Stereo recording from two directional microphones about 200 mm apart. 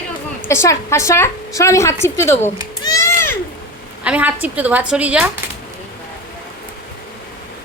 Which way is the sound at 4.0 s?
5° right (ahead or behind).